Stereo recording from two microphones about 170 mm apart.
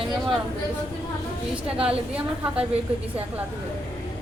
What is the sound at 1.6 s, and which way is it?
Speech, 35° right (ahead or behind).